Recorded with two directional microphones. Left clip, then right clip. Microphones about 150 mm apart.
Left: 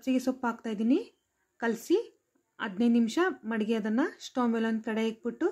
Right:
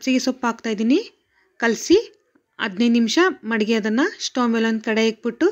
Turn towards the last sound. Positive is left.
turn(degrees=-20)  # may be behind; listen again after turning